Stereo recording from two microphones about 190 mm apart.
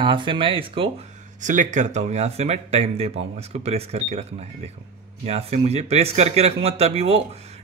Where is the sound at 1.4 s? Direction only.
40° right (ahead or behind).